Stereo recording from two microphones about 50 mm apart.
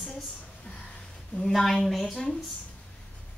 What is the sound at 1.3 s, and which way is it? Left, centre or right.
Speech, centre.